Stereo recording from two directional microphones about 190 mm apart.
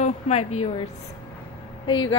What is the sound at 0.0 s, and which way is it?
Speech, 35° left (ahead or behind).